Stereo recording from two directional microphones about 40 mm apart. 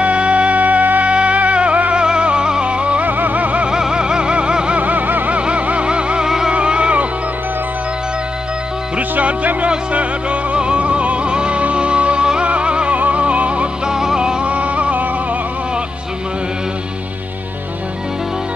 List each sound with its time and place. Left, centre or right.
0.0 s music: right
3.1 s vehicle: right
3.6 s a sound: centre
4.7 s vehicle: right
5.3 s music: right
6.2 s music: centre
6.5 s music: right
9.2 s music: right
13.8 s music: centre
14.4 s music: right